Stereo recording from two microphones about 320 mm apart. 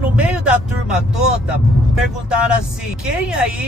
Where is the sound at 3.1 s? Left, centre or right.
Centre.